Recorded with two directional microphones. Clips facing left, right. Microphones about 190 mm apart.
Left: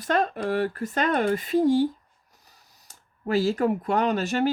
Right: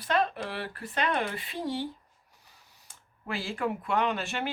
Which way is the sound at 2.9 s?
40° left (ahead or behind).